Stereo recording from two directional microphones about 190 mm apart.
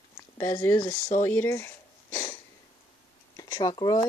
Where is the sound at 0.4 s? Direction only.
15° left (ahead or behind).